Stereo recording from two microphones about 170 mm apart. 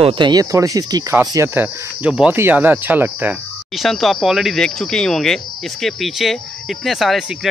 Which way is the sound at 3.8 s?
Centre (ahead or behind).